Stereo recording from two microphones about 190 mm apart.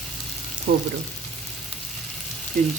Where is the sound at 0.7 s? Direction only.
60° right (ahead or behind).